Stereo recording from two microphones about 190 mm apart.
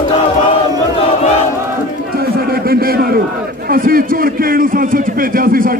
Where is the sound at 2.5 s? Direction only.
50° right (ahead or behind).